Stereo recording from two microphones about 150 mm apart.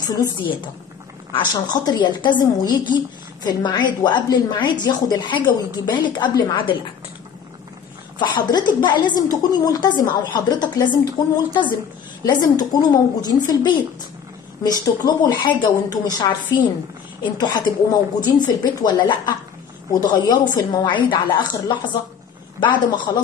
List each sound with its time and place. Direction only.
0.0 s a woman's voice: 25° left (ahead or behind)
8.2 s a woman's voice: 30° left (ahead or behind)